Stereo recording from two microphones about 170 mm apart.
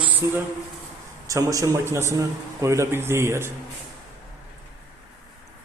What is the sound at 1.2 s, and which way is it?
Speech, 20° right (ahead or behind).